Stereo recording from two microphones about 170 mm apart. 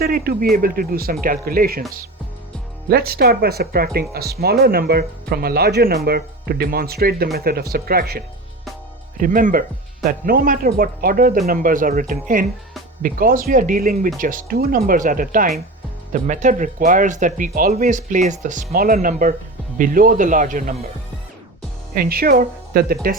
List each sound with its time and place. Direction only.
0.0 s speech: 60° right (ahead or behind)
2.9 s speech: 65° right (ahead or behind)
21.9 s speech: 60° right (ahead or behind)